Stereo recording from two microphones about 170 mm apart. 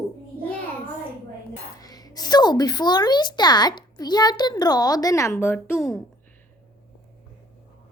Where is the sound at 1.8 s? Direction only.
20° left (ahead or behind).